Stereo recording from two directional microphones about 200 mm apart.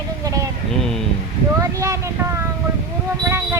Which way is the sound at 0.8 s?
Centre (ahead or behind).